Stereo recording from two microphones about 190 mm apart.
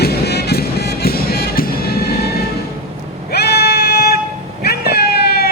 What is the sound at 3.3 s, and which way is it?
Music, 60° left (ahead or behind).